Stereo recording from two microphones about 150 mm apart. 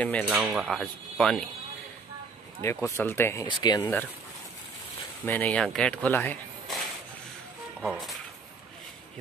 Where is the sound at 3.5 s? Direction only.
30° left (ahead or behind).